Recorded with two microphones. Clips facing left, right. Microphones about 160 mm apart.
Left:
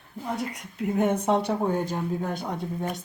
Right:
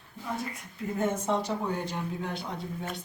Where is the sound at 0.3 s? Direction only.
75° left (ahead or behind).